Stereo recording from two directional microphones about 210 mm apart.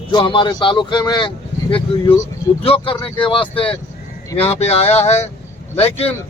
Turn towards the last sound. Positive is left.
turn(degrees=30)  # may be behind; listen again after turning